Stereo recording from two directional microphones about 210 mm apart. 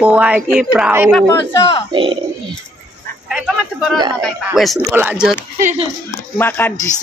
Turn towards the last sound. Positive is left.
turn(degrees=10)  # may be behind; listen again after turning